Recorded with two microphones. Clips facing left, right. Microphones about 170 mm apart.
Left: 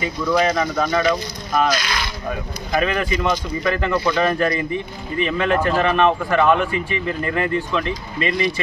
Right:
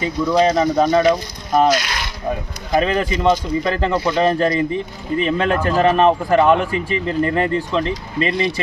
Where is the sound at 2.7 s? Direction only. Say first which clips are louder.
Right 3 dB; 30° right (ahead or behind).